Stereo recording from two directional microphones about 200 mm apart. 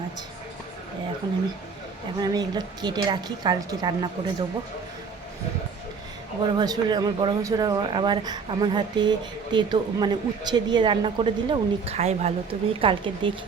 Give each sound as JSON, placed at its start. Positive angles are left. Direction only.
{"t": 2.1, "sound": "speech", "side_deg": -20}
{"t": 6.4, "sound": "speech", "side_deg": -20}